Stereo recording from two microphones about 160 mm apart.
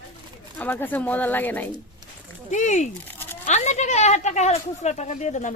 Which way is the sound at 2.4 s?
50° left (ahead or behind).